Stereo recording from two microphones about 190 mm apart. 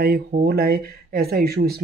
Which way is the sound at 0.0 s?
55° right (ahead or behind).